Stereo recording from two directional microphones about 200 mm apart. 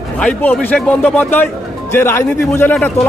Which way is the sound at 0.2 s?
5° left (ahead or behind).